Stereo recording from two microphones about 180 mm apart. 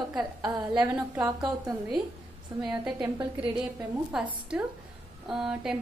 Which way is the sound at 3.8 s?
5° right (ahead or behind).